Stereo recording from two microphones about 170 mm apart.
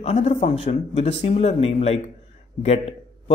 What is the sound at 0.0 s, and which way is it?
A man's voice, 35° left (ahead or behind).